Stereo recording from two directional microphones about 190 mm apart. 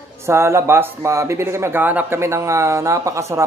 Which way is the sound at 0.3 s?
15° right (ahead or behind).